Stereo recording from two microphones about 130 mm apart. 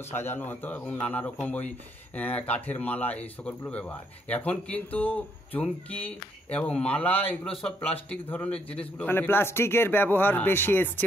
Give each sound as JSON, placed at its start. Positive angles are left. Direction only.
{"t": 0.1, "sound": "speech", "side_deg": 15}